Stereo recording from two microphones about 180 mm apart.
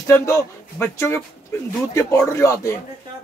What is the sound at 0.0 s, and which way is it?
Speech, 15° left (ahead or behind).